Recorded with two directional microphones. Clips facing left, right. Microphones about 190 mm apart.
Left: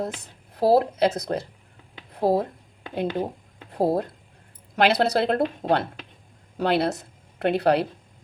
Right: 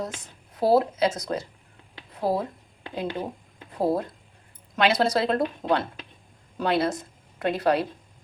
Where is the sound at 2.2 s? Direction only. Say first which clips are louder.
Left 4 dB; 25° left (ahead or behind).